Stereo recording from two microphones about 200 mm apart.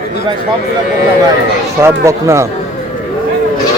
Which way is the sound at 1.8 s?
15° right (ahead or behind).